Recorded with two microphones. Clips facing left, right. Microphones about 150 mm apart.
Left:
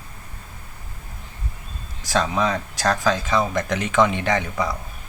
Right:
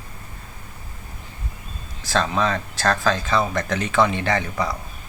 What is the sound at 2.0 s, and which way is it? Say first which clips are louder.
Speech: even; 15° left (ahead or behind).